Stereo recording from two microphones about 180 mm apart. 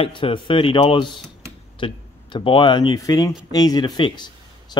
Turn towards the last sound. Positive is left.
turn(degrees=25)  # may be behind; listen again after turning